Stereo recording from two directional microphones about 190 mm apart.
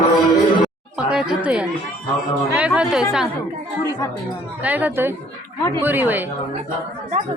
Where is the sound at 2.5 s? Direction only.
5° right (ahead or behind).